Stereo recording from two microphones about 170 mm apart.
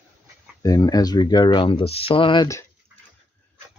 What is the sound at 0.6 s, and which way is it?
Speech, 20° left (ahead or behind).